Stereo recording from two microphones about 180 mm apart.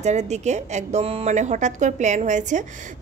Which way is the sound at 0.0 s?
40° right (ahead or behind).